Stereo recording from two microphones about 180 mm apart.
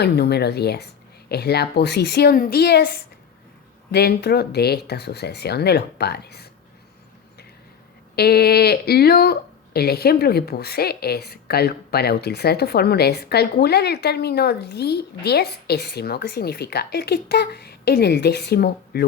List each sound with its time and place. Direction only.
0.0 s speech: 65° left (ahead or behind)
8.1 s speech: 60° left (ahead or behind)